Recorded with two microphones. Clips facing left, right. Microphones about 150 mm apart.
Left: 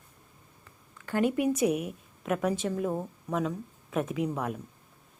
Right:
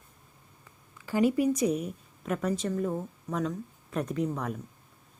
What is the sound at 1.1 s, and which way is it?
A woman's voice, centre (ahead or behind).